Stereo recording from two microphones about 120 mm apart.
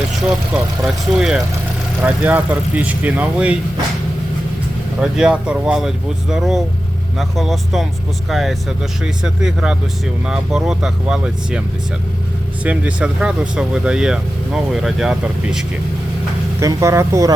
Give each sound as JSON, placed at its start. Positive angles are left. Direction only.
{"t": 0.3, "sound": "speech", "side_deg": -5}
{"t": 4.9, "sound": "speech", "side_deg": -5}
{"t": 12.6, "sound": "speech", "side_deg": -10}
{"t": 16.6, "sound": "speech", "side_deg": -25}